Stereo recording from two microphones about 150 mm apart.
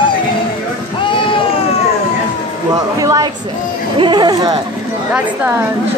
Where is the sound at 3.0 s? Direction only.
25° right (ahead or behind).